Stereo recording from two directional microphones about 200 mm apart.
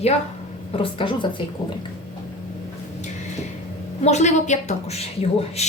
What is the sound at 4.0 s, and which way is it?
A woman's voice, 35° left (ahead or behind).